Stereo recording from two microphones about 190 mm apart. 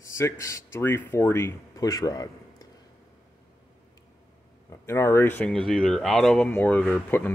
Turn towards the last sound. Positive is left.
turn(degrees=10)  # may be behind; listen again after turning